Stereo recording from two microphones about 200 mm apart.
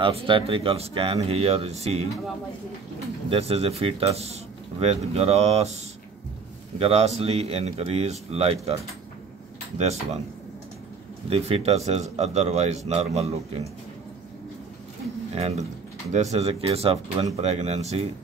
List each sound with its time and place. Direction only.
0.0 s speech: 25° right (ahead or behind)
3.3 s speech: 30° right (ahead or behind)
6.8 s speech: 30° right (ahead or behind)
9.8 s speech: 30° right (ahead or behind)
11.2 s speech: 30° right (ahead or behind)
15.3 s speech: 30° right (ahead or behind)